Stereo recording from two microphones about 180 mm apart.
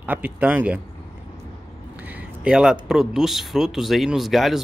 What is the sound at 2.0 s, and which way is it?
Speech, 10° right (ahead or behind).